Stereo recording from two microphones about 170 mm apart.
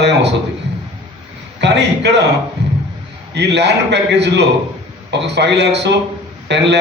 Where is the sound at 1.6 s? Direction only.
90° right.